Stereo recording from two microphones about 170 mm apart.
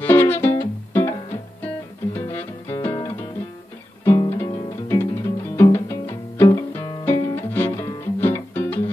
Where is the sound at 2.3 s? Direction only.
15° left (ahead or behind).